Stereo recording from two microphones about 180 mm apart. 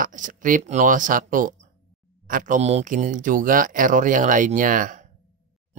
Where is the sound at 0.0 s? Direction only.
45° right (ahead or behind).